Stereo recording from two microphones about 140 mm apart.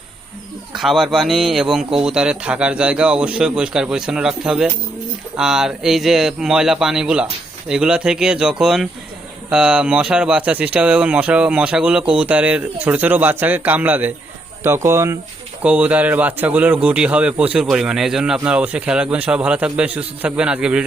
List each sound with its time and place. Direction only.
0.7 s a man's voice: centre (ahead or behind)